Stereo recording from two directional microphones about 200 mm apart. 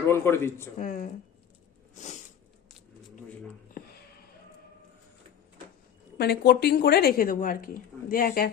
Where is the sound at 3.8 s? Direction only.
45° left (ahead or behind).